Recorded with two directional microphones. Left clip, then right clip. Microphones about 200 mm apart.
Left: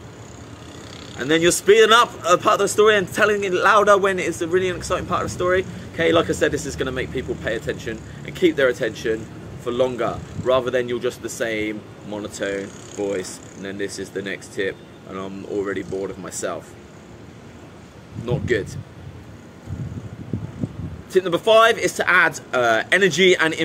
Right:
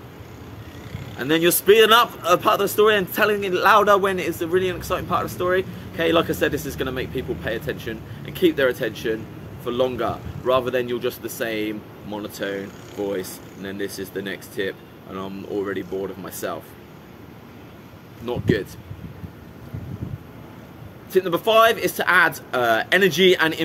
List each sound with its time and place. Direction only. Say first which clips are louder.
1.1 s speech: left 2 dB; 5° right (ahead or behind)
18.2 s speech: left 1 dB; 5° right (ahead or behind)
21.1 s speech: left 2 dB; centre (ahead or behind)